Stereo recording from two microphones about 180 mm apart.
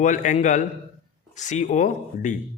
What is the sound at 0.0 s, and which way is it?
A man's voice, 45° left (ahead or behind).